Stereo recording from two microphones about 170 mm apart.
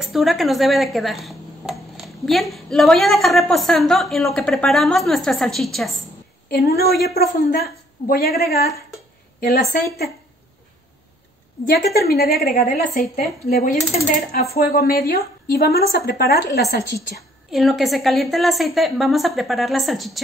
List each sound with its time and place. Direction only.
0.0 s speech: centre (ahead or behind)
6.5 s a woman's voice: 65° left (ahead or behind)
12.0 s a woman's voice: 65° left (ahead or behind)
14.5 s a woman's voice: 65° left (ahead or behind)
17.5 s speech: centre (ahead or behind)